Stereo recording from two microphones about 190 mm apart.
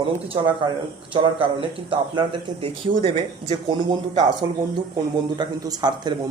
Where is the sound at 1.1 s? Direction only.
25° right (ahead or behind).